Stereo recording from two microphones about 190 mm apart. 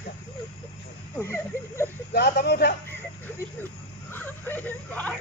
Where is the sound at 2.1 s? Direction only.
55° left (ahead or behind).